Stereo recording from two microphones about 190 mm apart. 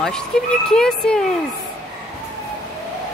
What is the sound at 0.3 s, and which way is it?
Speech, 5° left (ahead or behind).